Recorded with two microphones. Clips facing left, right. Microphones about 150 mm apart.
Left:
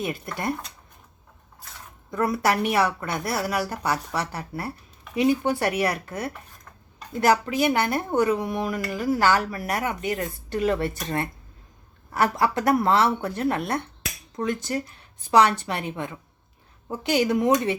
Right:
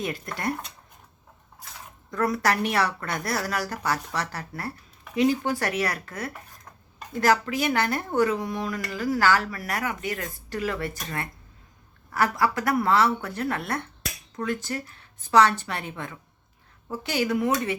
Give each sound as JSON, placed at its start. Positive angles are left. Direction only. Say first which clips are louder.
{"t": 0.1, "sound": "speech", "louder": "left 1 dB", "side_deg": 20}
{"t": 2.1, "sound": "a woman's voice", "louder": "left 2 dB", "side_deg": 10}